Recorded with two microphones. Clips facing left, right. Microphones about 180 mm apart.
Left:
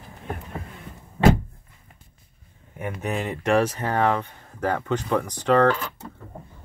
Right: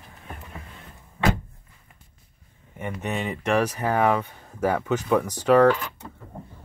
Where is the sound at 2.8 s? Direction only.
Centre (ahead or behind).